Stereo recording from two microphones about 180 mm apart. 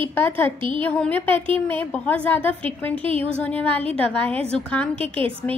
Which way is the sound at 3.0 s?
30° right (ahead or behind).